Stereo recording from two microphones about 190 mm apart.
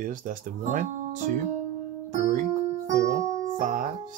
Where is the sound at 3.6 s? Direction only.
45° right (ahead or behind).